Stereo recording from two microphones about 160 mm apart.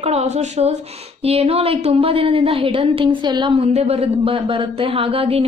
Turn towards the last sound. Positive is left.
turn(degrees=-35)  # may be behind; listen again after turning